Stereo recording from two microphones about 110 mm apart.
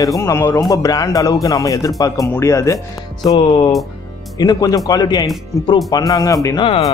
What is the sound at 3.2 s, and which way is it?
Music, 45° left (ahead or behind).